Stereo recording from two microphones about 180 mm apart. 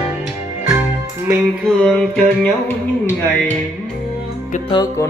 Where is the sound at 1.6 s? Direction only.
Centre (ahead or behind).